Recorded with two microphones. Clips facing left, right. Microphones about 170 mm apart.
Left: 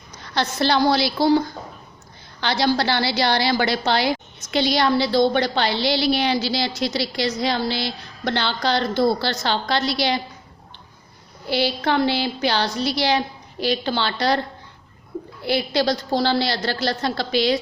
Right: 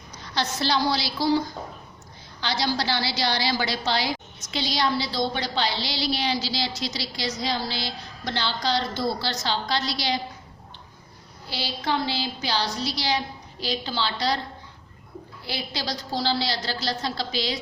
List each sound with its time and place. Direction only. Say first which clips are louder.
0.2 s a woman's voice: left 5 dB; 60° left (ahead or behind)
11.4 s a woman's voice: left 8 dB; 60° left (ahead or behind)